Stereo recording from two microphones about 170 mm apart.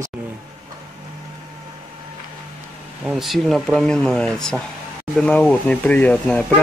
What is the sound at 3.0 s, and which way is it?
Speech, centre (ahead or behind).